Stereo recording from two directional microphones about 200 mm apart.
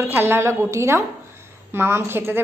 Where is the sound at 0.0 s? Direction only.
10° right (ahead or behind).